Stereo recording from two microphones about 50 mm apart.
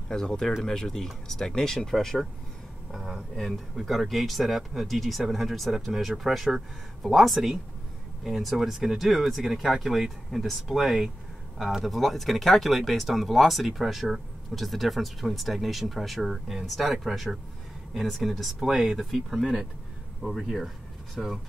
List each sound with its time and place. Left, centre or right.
0.1 s speech: centre